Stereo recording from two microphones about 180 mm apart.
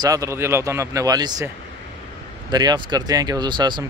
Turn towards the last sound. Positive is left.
turn(degrees=-25)  # may be behind; listen again after turning